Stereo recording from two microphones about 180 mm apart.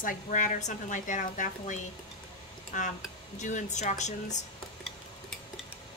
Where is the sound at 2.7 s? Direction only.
45° left (ahead or behind).